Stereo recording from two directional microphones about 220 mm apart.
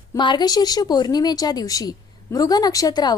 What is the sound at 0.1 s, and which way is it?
A woman's voice, 20° left (ahead or behind).